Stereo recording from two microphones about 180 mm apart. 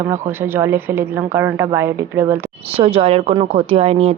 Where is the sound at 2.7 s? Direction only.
35° right (ahead or behind).